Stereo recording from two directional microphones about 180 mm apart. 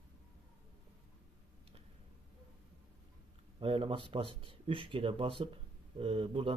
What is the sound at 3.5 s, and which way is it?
Speech, 30° right (ahead or behind).